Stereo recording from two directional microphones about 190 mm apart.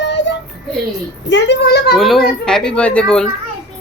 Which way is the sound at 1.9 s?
Centre (ahead or behind).